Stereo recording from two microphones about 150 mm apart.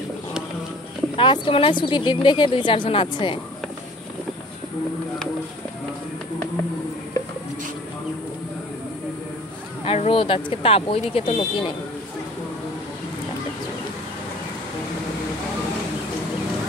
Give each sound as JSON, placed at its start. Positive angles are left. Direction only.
{"t": 1.1, "sound": "a woman's voice", "side_deg": 30}
{"t": 9.8, "sound": "a woman's voice", "side_deg": 40}